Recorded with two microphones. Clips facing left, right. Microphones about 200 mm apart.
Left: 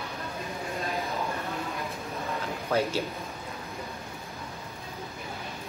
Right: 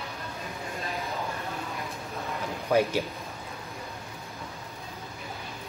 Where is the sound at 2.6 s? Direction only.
15° right (ahead or behind).